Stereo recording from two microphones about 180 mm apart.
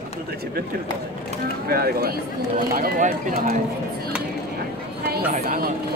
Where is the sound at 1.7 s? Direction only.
60° right (ahead or behind).